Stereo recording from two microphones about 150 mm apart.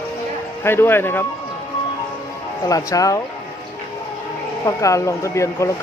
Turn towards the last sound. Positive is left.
turn(degrees=20)  # may be behind; listen again after turning